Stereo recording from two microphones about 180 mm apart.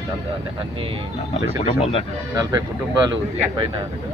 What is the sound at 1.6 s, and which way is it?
Speech, 30° left (ahead or behind).